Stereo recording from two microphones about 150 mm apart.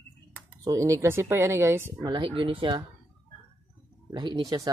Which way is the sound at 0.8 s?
20° right (ahead or behind).